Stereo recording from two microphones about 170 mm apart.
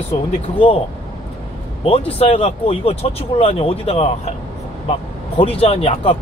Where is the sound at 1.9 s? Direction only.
35° left (ahead or behind).